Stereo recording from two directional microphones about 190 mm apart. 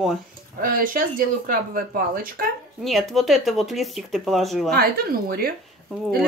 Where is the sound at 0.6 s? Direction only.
45° right (ahead or behind).